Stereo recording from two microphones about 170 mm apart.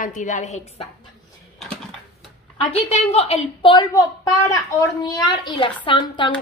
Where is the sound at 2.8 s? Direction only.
40° left (ahead or behind).